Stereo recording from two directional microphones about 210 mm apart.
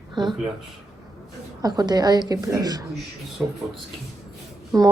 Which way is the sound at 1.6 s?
20° right (ahead or behind).